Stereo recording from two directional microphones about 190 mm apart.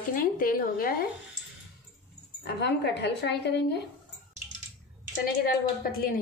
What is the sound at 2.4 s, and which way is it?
Speech, 60° left (ahead or behind).